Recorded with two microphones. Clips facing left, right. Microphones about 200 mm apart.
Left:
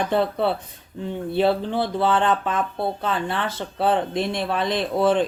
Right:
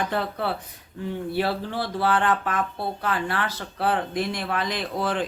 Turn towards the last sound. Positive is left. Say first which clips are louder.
# left 7 dB
turn(degrees=25)  # may be behind; listen again after turning